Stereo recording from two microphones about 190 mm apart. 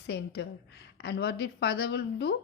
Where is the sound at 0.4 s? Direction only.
65° left (ahead or behind).